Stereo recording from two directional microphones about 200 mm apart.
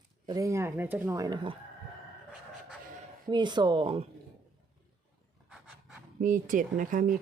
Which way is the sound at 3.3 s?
20° right (ahead or behind).